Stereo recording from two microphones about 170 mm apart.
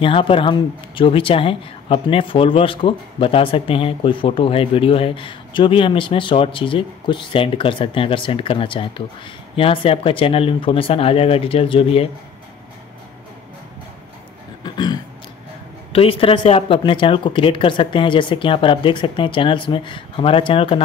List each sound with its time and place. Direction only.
0.0 s speech: 30° left (ahead or behind)
14.6 s a sound: 25° left (ahead or behind)
15.9 s speech: 35° left (ahead or behind)